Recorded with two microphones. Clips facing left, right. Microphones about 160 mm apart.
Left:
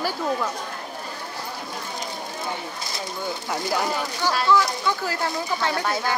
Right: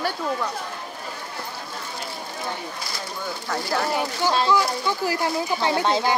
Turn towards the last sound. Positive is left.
turn(degrees=-20)  # may be behind; listen again after turning